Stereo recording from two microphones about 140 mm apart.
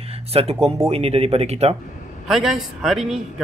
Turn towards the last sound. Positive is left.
turn(degrees=0)  # may be behind; listen again after turning